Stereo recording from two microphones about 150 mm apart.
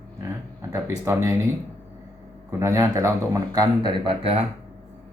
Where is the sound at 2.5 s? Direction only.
20° right (ahead or behind); by 4.4 s 40° right (ahead or behind).